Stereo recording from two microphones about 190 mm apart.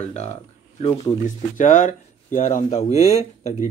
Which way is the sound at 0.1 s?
35° left (ahead or behind).